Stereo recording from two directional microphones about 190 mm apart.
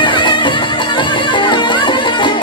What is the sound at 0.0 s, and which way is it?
Music, 25° left (ahead or behind).